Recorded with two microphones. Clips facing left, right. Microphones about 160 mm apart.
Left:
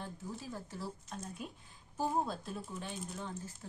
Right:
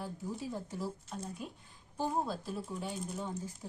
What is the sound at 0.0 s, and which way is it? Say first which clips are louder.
Speech: right 4 dB; 15° right (ahead or behind).